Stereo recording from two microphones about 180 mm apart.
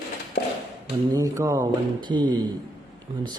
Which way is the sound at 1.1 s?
15° right (ahead or behind).